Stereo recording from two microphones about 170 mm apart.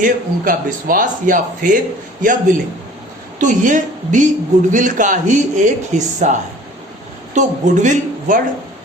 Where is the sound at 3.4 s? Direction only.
50° right (ahead or behind).